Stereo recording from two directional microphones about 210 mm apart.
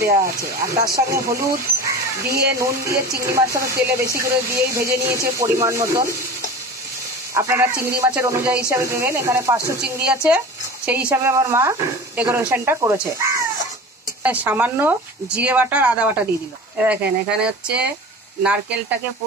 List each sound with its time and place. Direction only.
0.9 s speech: 15° right (ahead or behind)
2.2 s speech: 50° right (ahead or behind)
2.5 s speech: 15° right (ahead or behind)
7.3 s speech: 10° right (ahead or behind)